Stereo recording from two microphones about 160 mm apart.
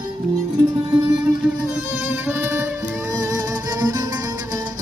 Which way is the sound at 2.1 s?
15° right (ahead or behind).